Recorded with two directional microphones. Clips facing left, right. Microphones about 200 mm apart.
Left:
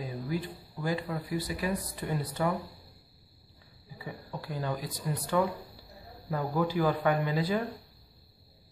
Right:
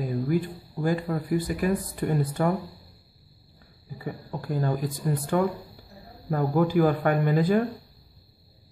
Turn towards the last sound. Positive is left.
turn(degrees=-50)  # may be behind; listen again after turning